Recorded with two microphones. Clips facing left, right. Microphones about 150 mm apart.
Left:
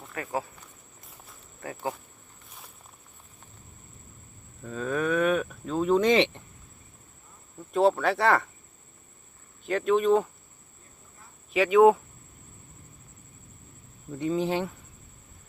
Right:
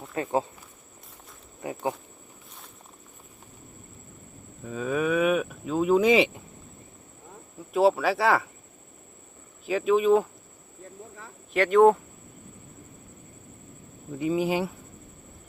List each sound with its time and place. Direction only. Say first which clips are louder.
0.1 s speech: right 5 dB; 25° right (ahead or behind)
1.6 s speech: right 4 dB; 20° right (ahead or behind)
4.6 s speech: right 2 dB; 5° right (ahead or behind)
7.7 s speech: right 1 dB; 5° right (ahead or behind)
9.6 s speech: right 1 dB; 5° right (ahead or behind)
11.5 s speech: even; centre (ahead or behind)
14.2 s speech: right 2 dB; 10° right (ahead or behind)